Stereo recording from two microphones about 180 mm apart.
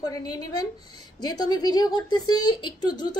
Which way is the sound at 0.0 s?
20° left (ahead or behind).